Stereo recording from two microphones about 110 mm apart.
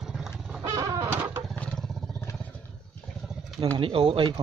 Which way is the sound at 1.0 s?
20° right (ahead or behind).